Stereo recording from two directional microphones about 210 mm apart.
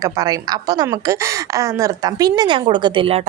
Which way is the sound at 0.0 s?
15° right (ahead or behind).